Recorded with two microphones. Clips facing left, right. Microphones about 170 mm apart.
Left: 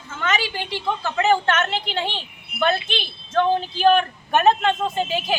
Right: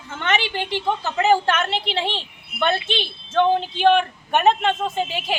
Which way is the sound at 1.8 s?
30° right (ahead or behind).